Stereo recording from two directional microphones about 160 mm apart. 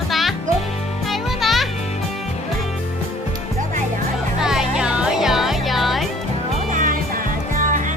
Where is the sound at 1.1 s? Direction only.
Centre (ahead or behind).